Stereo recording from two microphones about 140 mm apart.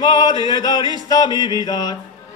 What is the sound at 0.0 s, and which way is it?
Music, 30° left (ahead or behind).